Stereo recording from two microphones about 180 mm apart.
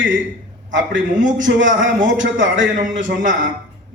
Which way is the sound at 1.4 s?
90° right.